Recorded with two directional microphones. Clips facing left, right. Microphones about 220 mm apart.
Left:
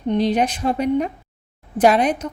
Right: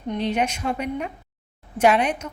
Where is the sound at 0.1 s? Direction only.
35° left (ahead or behind).